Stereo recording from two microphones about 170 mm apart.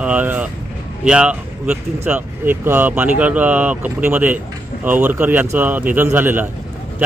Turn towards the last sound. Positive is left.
turn(degrees=-10)  # may be behind; listen again after turning